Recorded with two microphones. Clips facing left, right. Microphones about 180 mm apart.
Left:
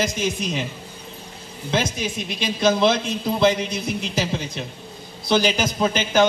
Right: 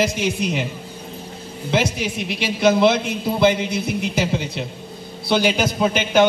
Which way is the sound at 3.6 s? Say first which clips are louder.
Right 3 dB; 60° right (ahead or behind).